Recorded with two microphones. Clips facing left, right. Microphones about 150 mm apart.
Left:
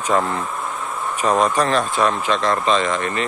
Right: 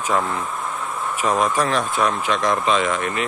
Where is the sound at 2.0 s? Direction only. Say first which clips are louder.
Left 2 dB; 10° right (ahead or behind).